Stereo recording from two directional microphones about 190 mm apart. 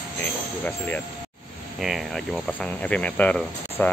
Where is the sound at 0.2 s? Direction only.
10° left (ahead or behind).